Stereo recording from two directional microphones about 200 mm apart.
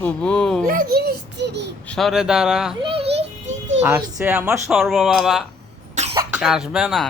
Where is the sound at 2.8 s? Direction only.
25° right (ahead or behind).